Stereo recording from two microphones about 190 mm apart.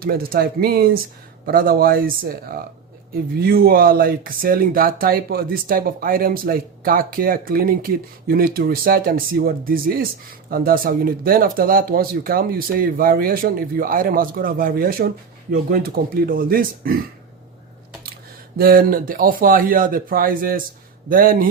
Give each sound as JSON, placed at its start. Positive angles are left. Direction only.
{"t": 0.0, "sound": "speech", "side_deg": -50}
{"t": 18.5, "sound": "speech", "side_deg": -50}